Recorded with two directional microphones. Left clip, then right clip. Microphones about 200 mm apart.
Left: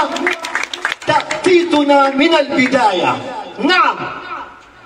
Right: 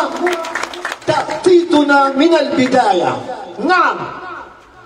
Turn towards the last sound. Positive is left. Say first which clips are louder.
# even
turn(degrees=20)  # may be behind; listen again after turning